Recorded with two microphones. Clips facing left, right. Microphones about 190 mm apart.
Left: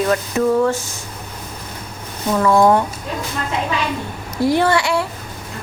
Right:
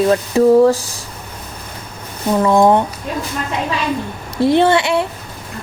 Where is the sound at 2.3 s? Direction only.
20° right (ahead or behind).